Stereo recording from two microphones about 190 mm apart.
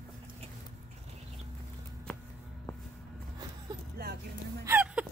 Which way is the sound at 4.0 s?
55° right (ahead or behind).